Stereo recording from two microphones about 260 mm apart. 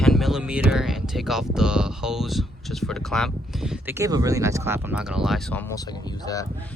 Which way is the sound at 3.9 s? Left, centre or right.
Centre.